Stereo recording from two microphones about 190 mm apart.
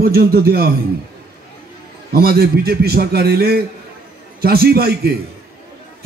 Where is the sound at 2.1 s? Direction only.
55° right (ahead or behind).